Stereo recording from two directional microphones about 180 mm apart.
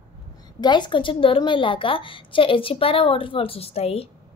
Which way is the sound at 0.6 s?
25° left (ahead or behind).